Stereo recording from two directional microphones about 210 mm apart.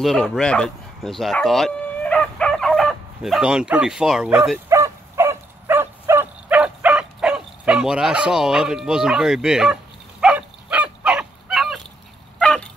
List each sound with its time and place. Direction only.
0.0 s bow-wow: centre (ahead or behind)
12.4 s dog: 5° left (ahead or behind)